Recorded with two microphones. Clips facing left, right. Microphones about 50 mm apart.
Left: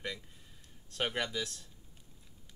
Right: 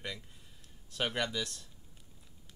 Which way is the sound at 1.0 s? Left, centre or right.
Centre.